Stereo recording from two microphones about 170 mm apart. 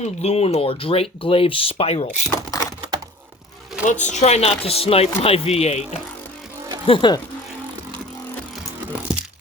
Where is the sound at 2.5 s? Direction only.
20° left (ahead or behind).